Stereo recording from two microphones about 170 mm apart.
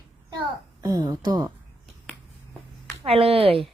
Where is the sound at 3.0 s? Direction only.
35° right (ahead or behind).